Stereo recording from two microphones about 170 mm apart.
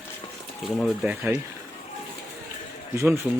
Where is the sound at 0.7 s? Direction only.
Centre (ahead or behind).